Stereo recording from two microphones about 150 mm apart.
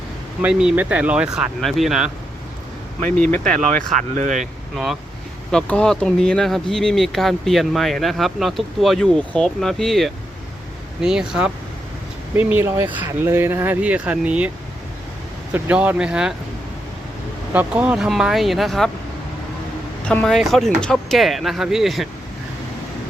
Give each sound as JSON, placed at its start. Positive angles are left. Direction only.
{"t": 0.4, "sound": "speech", "side_deg": -10}
{"t": 3.4, "sound": "speech", "side_deg": -55}
{"t": 5.5, "sound": "speech", "side_deg": 5}
{"t": 15.5, "sound": "speech", "side_deg": -10}
{"t": 17.5, "sound": "speech", "side_deg": -10}
{"t": 20.1, "sound": "speech", "side_deg": 5}